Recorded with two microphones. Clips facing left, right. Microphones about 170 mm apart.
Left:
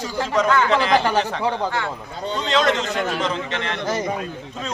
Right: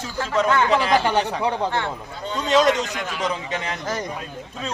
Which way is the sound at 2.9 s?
40° left (ahead or behind).